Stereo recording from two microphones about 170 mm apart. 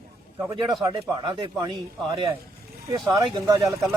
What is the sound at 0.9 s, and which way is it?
Speech, 25° right (ahead or behind).